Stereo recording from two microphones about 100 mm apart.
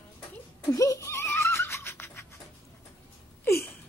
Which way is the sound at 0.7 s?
30° left (ahead or behind).